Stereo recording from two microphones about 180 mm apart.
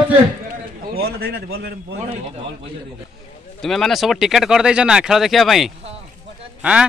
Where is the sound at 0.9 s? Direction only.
60° right (ahead or behind).